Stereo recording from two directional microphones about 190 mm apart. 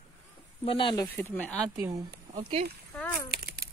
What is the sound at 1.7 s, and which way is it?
Speech, 10° right (ahead or behind).